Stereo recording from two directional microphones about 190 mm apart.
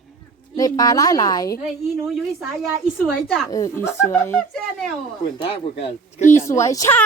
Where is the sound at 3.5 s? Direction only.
15° left (ahead or behind).